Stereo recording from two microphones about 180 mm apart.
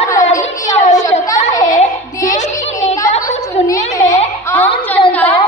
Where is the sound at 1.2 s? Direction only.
20° left (ahead or behind).